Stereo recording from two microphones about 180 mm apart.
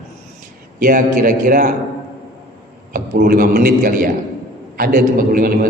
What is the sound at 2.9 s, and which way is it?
A man's voice, 50° right (ahead or behind).